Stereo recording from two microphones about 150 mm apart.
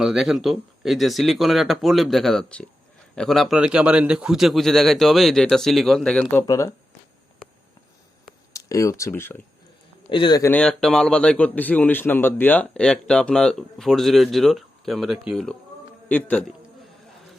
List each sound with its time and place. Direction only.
0.0 s speech: 5° right (ahead or behind)
6.4 s speech: 20° left (ahead or behind)
8.5 s speech: 20° left (ahead or behind)
10.1 s a man's voice: 35° left (ahead or behind)
10.4 s a man's voice: 10° left (ahead or behind)